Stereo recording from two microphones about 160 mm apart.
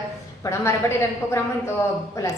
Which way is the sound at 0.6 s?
15° left (ahead or behind).